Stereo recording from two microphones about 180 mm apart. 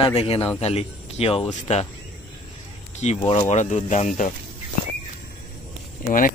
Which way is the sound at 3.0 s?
35° left (ahead or behind).